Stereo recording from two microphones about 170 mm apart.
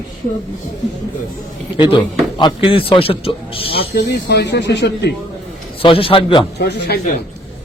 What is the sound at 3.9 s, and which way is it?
Speech, 70° left (ahead or behind).